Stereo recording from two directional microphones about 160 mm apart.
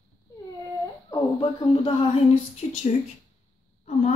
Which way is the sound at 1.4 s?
35° left (ahead or behind).